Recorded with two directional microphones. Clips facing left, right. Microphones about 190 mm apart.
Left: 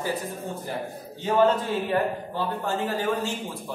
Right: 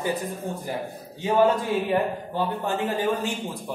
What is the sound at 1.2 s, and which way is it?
A man's voice, 10° right (ahead or behind).